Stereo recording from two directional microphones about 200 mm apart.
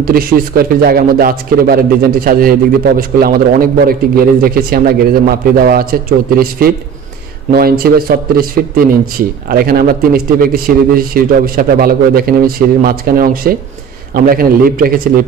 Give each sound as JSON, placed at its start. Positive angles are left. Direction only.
{"t": 0.0, "sound": "speech", "side_deg": -50}